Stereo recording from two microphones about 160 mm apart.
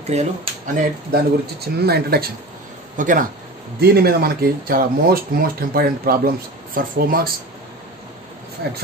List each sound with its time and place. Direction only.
0.0 s speech: 45° right (ahead or behind)
1.1 s speech: 80° right
3.0 s speech: 55° right (ahead or behind)
3.8 s speech: 80° right
8.6 s speech: 80° right